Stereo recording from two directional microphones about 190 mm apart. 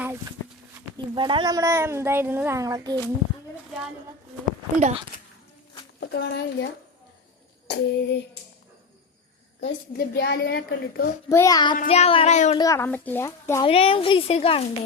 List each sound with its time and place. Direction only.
0.0 s a sound: 10° right (ahead or behind)
0.9 s a woman's voice: 25° right (ahead or behind)
6.0 s speech: 60° left (ahead or behind)
7.7 s a woman's voice: 60° left (ahead or behind)
9.6 s a woman's voice: 55° left (ahead or behind)
11.3 s speech: 15° left (ahead or behind)
11.9 s child singing: 30° left (ahead or behind)
12.5 s speech: 15° left (ahead or behind)
13.7 s speech: 30° left (ahead or behind)